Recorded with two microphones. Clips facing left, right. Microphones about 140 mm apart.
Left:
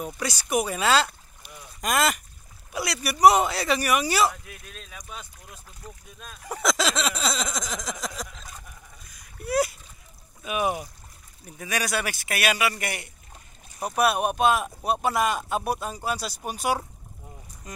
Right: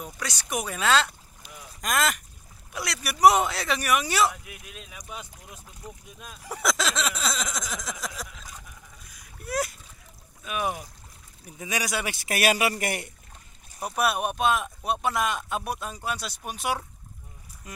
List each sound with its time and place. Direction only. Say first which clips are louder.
0.0 s speech: left 5 dB; 5° left (ahead or behind)
4.5 s speech: even; 10° right (ahead or behind)
6.4 s speech: left 2 dB; 5° right (ahead or behind)
9.1 s a sound: left 5 dB; centre (ahead or behind)
10.4 s speech: left 3 dB; 5° left (ahead or behind)
11.4 s speech: left 1 dB; 15° right (ahead or behind)
12.2 s a man's voice: right 4 dB; 35° right (ahead or behind)
13.8 s speech: left 3 dB; centre (ahead or behind)